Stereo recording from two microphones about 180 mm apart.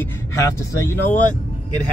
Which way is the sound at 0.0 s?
15° left (ahead or behind).